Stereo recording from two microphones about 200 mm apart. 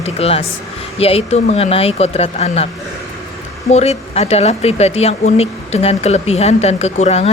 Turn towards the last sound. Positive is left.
turn(degrees=30)  # may be behind; listen again after turning